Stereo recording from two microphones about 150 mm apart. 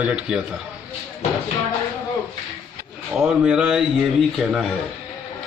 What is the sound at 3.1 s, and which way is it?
A man's voice, 5° right (ahead or behind).